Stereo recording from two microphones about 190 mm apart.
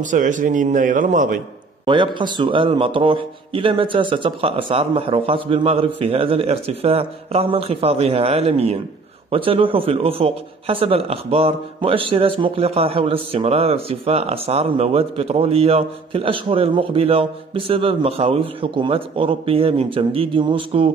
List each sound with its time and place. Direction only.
0.0 s a man's voice: 40° right (ahead or behind)
1.9 s a man's voice: 25° right (ahead or behind)